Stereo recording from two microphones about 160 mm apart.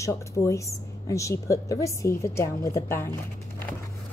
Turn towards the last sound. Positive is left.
turn(degrees=15)  # may be behind; listen again after turning